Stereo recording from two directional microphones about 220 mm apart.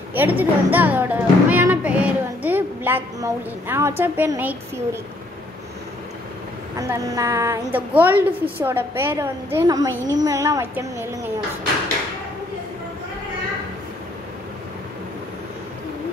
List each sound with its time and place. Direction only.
0.1 s speech: 10° right (ahead or behind)
6.8 s a woman's voice: 15° right (ahead or behind)